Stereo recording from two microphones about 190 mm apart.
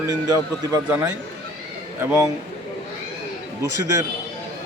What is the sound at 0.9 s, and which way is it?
Speech, 15° right (ahead or behind).